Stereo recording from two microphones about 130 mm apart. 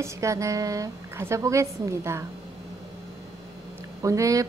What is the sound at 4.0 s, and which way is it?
Speech, 25° right (ahead or behind).